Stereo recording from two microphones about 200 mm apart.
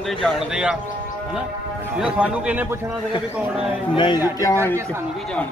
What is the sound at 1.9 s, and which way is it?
Speech, 5° right (ahead or behind).